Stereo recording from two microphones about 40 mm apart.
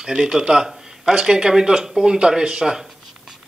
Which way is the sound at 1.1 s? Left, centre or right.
Centre.